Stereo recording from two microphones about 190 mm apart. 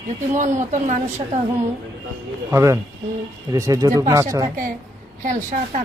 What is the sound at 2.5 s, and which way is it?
Speech, 15° right (ahead or behind).